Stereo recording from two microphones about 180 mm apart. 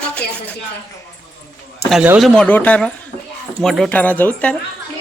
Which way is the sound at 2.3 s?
5° left (ahead or behind).